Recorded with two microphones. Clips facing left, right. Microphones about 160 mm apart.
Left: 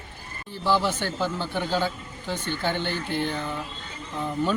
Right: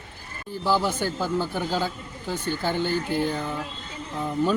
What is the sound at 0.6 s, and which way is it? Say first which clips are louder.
Speech: even; 10° right (ahead or behind).